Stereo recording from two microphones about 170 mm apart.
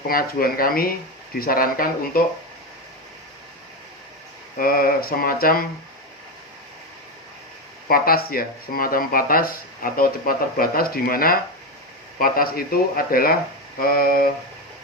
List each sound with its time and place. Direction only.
0.1 s speech: 60° left (ahead or behind)
4.5 s speech: 60° left (ahead or behind)
7.9 s speech: 60° left (ahead or behind)